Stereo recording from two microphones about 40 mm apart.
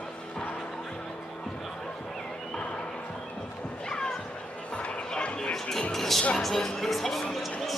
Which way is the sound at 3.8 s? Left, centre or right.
Centre.